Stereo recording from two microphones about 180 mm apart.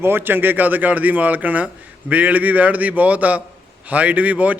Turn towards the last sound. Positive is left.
turn(degrees=-10)  # may be behind; listen again after turning